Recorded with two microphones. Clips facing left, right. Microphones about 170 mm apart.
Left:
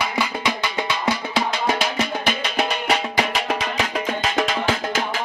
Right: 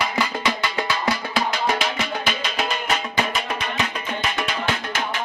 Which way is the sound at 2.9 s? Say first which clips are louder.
Left 2 dB; 90° left.